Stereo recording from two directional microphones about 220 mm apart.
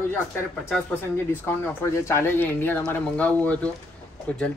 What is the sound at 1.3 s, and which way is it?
Speech, 10° left (ahead or behind).